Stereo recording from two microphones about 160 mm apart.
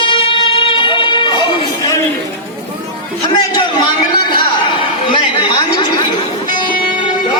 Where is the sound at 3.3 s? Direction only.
30° left (ahead or behind).